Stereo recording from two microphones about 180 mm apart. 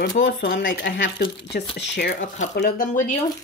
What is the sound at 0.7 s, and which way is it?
Speech, 85° left.